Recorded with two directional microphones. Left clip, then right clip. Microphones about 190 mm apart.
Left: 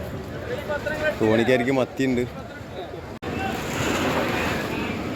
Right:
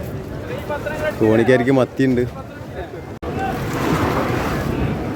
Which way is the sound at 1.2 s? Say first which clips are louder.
Right 6 dB; 20° right (ahead or behind).